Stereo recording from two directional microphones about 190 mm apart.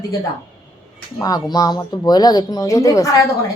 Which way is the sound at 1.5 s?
20° left (ahead or behind).